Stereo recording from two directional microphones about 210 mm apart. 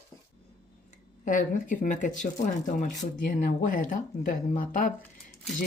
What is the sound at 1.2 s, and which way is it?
Speech, 40° left (ahead or behind).